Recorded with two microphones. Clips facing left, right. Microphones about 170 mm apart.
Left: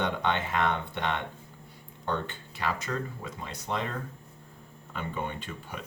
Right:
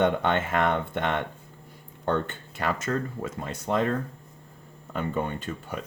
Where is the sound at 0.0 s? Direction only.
50° right (ahead or behind).